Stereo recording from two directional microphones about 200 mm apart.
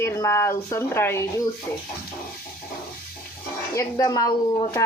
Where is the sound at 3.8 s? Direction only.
15° left (ahead or behind).